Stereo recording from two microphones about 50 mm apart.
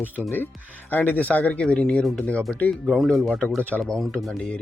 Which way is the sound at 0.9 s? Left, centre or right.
Left.